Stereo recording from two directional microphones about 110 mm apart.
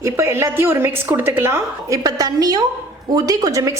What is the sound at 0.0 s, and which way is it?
A woman's voice, 25° right (ahead or behind).